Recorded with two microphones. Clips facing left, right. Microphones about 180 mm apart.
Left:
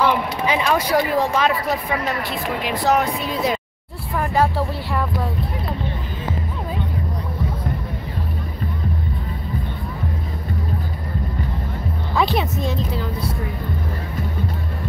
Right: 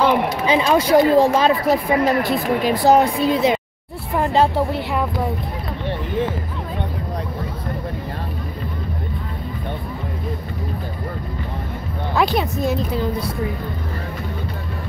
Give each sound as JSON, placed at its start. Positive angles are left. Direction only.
{"t": 0.5, "sound": "speech", "side_deg": -25}
{"t": 12.2, "sound": "a woman's voice", "side_deg": 0}